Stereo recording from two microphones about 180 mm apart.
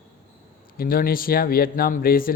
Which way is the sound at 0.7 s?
55° left (ahead or behind).